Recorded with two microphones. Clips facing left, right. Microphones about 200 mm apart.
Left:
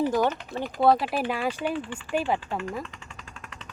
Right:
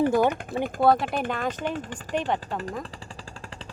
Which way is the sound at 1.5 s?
40° right (ahead or behind).